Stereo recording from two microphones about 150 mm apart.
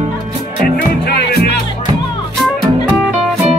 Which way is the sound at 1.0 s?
90° left.